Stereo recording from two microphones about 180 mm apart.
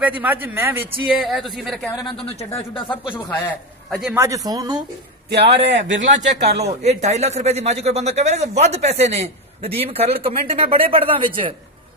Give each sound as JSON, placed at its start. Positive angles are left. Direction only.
{"t": 0.0, "sound": "a man's voice", "side_deg": -10}
{"t": 1.1, "sound": "speech", "side_deg": 0}
{"t": 2.2, "sound": "a man's voice", "side_deg": 35}
{"t": 4.1, "sound": "speech", "side_deg": -15}
{"t": 5.3, "sound": "a man's voice", "side_deg": -70}
{"t": 6.6, "sound": "speech", "side_deg": -35}